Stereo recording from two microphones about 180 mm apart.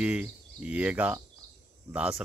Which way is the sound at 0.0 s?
5° right (ahead or behind).